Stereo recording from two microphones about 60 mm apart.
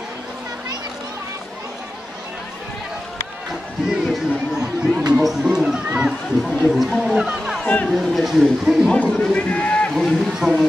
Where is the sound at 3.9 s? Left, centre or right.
Centre.